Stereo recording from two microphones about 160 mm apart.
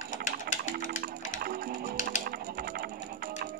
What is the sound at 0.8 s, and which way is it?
Music, 65° right (ahead or behind).